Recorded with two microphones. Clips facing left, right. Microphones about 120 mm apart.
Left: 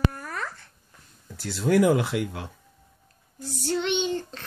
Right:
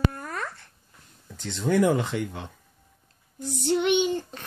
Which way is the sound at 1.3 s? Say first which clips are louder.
Left 2 dB; 10° left (ahead or behind).